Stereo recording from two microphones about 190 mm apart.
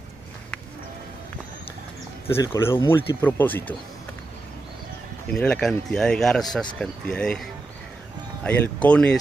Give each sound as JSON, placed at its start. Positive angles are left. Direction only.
{"t": 2.2, "sound": "speech", "side_deg": 15}
{"t": 5.3, "sound": "speech", "side_deg": 5}
{"t": 8.5, "sound": "speech", "side_deg": 5}